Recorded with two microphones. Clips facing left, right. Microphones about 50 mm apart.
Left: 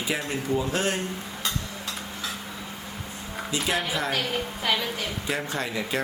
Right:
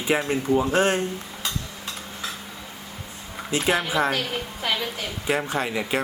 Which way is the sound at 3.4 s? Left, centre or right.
Right.